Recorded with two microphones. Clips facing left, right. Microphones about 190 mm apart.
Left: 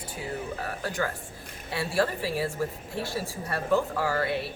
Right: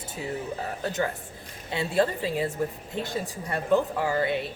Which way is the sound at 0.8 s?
20° right (ahead or behind).